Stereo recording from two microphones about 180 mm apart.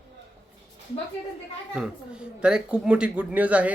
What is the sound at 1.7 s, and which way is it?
A woman's voice, 5° right (ahead or behind).